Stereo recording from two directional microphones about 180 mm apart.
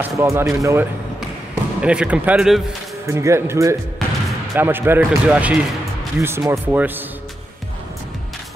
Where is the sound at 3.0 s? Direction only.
15° right (ahead or behind).